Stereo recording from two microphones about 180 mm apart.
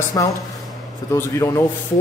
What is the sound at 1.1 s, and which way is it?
Speech, 15° left (ahead or behind).